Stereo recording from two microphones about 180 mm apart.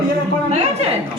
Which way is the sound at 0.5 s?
35° right (ahead or behind).